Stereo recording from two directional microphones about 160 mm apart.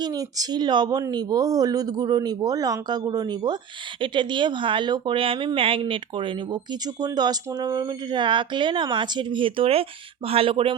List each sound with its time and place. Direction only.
0.0 s speech: 25° right (ahead or behind)